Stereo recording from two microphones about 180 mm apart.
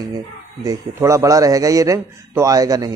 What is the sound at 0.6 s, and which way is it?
A man's voice, 15° right (ahead or behind).